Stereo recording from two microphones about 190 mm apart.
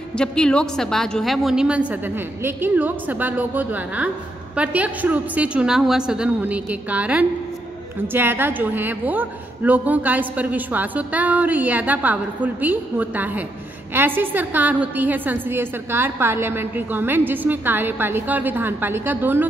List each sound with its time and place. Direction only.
0.1 s a woman's voice: 5° left (ahead or behind); by 19.4 s 10° right (ahead or behind)